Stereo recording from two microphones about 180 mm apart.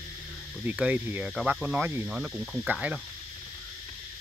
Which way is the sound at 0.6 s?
10° right (ahead or behind).